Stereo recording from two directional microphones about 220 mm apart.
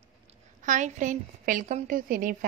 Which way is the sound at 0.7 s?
35° right (ahead or behind).